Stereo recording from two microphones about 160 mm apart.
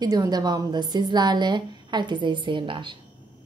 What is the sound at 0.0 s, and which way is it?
A woman's voice, 25° right (ahead or behind).